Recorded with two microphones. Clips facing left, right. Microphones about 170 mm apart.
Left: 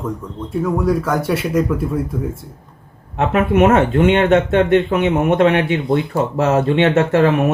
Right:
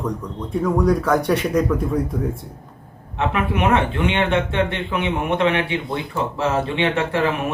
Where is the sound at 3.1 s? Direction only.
45° left (ahead or behind).